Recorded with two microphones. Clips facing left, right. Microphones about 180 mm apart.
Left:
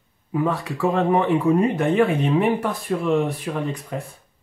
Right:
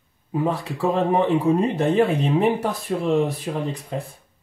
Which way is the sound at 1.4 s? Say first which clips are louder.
Left 1 dB; 35° right (ahead or behind).